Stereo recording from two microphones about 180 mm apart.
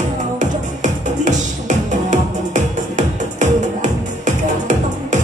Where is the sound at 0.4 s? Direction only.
45° right (ahead or behind).